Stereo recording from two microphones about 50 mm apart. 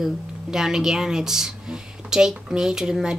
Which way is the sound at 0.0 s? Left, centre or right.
Centre.